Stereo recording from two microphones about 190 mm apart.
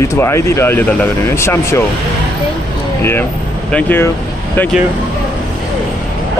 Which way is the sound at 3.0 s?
10° left (ahead or behind).